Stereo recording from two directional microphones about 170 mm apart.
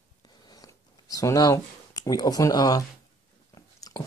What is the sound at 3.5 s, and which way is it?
Biting, 20° left (ahead or behind).